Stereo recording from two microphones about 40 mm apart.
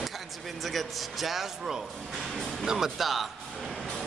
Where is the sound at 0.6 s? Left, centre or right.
Centre.